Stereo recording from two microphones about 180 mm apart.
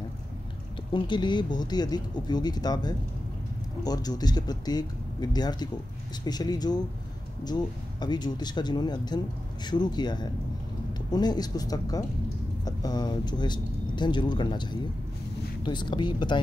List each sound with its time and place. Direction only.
0.9 s speech: 25° left (ahead or behind)